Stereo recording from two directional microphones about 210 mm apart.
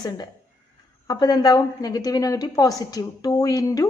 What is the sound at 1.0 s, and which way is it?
A woman's voice, 20° left (ahead or behind).